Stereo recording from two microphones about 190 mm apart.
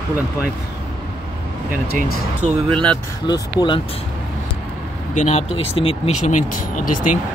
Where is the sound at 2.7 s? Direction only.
5° left (ahead or behind).